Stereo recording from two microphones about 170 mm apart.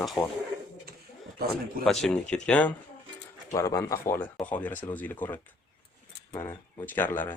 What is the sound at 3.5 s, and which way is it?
Speech, 20° left (ahead or behind).